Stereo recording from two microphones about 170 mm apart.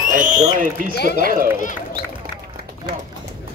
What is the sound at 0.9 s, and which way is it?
Speech, 70° left (ahead or behind).